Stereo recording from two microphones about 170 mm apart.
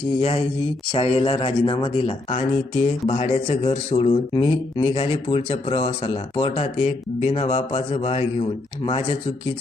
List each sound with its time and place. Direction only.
0.2 s speech: 35° left (ahead or behind)